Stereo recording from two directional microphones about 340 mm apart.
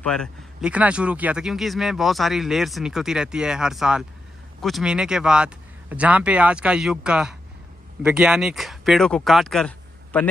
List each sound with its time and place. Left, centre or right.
0.0 s speech: centre